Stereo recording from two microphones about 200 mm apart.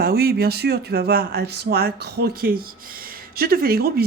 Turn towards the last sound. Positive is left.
turn(degrees=-50)  # may be behind; listen again after turning